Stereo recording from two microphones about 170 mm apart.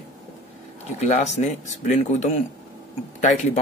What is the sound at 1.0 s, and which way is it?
Speech, 40° left (ahead or behind).